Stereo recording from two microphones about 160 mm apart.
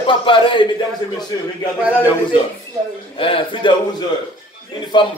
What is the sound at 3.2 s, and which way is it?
Speech, 35° left (ahead or behind).